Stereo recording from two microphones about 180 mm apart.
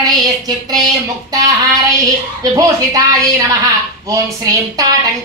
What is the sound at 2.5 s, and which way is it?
A woman's voice, 20° right (ahead or behind).